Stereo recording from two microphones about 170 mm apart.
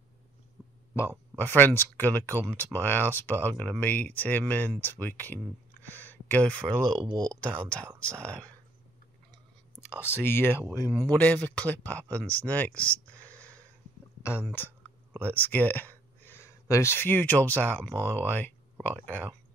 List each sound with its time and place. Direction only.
1.3 s speech: 10° left (ahead or behind)
7.0 s speech: 20° right (ahead or behind)
7.3 s speech: 5° left (ahead or behind)
9.8 s speech: 15° left (ahead or behind)